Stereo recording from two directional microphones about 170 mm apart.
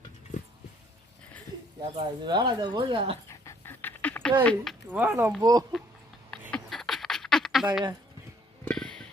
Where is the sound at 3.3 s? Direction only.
15° left (ahead or behind).